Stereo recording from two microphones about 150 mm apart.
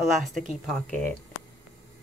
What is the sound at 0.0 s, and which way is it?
Speech, centre (ahead or behind).